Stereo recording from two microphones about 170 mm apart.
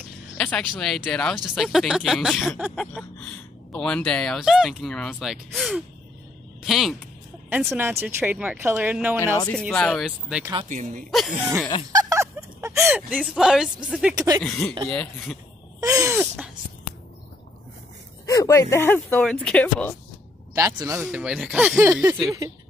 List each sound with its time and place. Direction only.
0.4 s a sound: 5° left (ahead or behind)
0.7 s speech: 5° left (ahead or behind)
7.4 s speech: 15° right (ahead or behind)
9.5 s speech: 5° left (ahead or behind)
10.7 s speech: 50° right (ahead or behind)
11.1 s speech: centre (ahead or behind)
11.9 s a sound: 20° right (ahead or behind)
12.8 s speech: 5° right (ahead or behind)
14.1 s speech: 20° right (ahead or behind)
14.4 s speech: 5° left (ahead or behind)
15.8 s speech: 20° right (ahead or behind)
18.2 s speech: 20° left (ahead or behind)
20.5 s speech: 20° right (ahead or behind)